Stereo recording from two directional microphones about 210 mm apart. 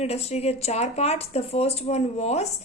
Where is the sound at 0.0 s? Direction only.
30° left (ahead or behind).